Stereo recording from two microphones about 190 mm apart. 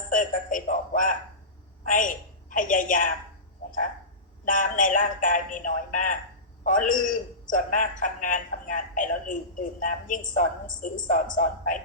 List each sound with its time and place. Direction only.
0.1 s music: 45° left (ahead or behind)
1.8 s a woman's voice: 45° left (ahead or behind)
4.4 s a man's voice: 45° left (ahead or behind)